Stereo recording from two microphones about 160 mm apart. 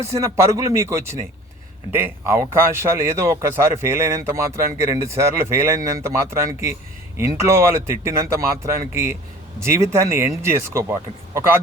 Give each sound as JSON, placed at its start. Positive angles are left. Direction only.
{"t": 0.0, "sound": "a man's voice", "side_deg": -20}